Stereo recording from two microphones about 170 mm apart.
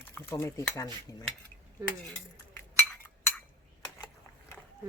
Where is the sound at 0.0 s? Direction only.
15° left (ahead or behind).